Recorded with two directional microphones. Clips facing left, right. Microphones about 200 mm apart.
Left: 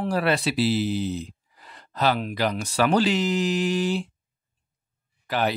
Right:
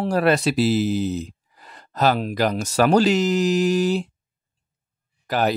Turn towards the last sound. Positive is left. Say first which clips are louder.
# right 4 dB
turn(degrees=-40)  # may be behind; listen again after turning